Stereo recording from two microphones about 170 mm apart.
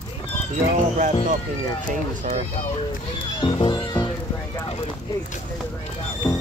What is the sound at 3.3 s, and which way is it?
Music, 30° left (ahead or behind).